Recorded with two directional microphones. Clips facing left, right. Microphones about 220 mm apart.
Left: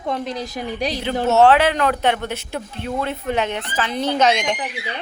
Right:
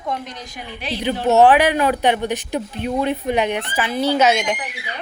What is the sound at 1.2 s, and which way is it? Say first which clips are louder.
Speech: right 1 dB; 15° right (ahead or behind).